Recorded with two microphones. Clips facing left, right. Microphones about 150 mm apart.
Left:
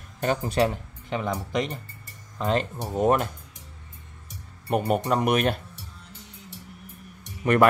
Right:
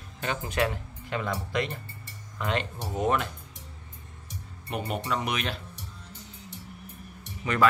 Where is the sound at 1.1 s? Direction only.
20° left (ahead or behind).